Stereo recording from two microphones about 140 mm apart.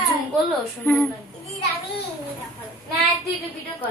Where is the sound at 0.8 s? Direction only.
10° left (ahead or behind).